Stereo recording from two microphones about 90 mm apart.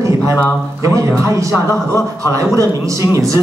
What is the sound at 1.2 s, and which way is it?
Speech, 35° right (ahead or behind).